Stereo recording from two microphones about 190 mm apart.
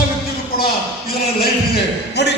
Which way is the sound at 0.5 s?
50° left (ahead or behind).